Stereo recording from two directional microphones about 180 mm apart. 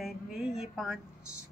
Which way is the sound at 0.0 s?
Centre (ahead or behind).